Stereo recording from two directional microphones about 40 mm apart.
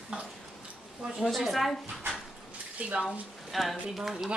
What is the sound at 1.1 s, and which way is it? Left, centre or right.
Speech, centre.